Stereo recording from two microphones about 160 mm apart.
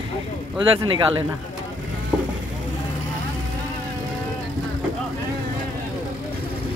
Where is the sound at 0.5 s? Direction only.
30° right (ahead or behind).